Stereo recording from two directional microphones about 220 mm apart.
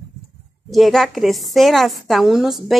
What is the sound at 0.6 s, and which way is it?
A woman's voice, centre (ahead or behind).